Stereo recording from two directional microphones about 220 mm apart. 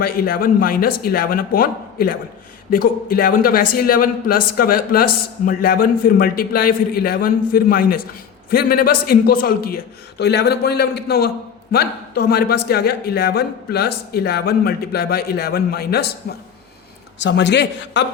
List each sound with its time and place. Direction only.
0.0 s a man's voice: 40° left (ahead or behind)
17.2 s a man's voice: 55° left (ahead or behind)